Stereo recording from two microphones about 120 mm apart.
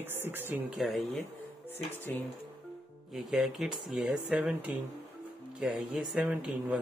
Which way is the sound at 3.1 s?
Centre (ahead or behind).